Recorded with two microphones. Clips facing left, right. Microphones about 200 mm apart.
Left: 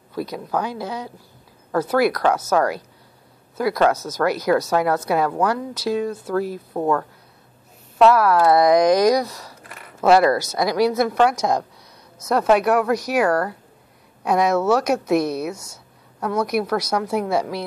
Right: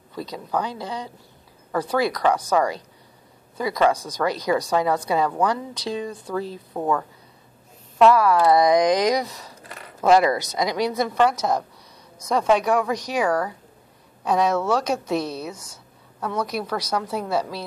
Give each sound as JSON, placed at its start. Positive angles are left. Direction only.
{"t": 0.1, "sound": "a woman's voice", "side_deg": 10}
{"t": 8.4, "sound": "speech", "side_deg": -15}
{"t": 11.0, "sound": "a woman's voice", "side_deg": 10}